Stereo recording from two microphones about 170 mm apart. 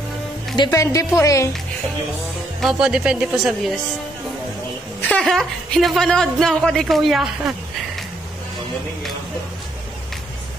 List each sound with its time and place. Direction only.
0.6 s speech: 20° left (ahead or behind)
2.6 s a woman's voice: 5° right (ahead or behind)
5.0 s a woman's voice: 5° left (ahead or behind)